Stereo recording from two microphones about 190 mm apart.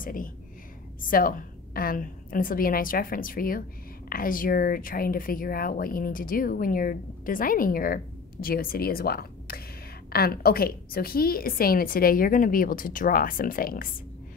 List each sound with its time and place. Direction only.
0.0 s speech: 45° left (ahead or behind)